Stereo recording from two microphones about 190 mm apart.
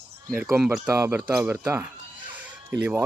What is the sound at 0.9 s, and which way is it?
Speech, 15° right (ahead or behind).